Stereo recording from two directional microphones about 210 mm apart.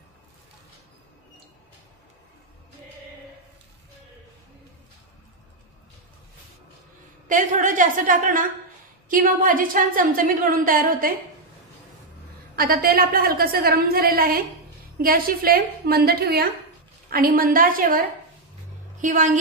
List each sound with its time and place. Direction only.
7.2 s a woman's voice: 40° right (ahead or behind)
12.5 s a woman's voice: 45° right (ahead or behind)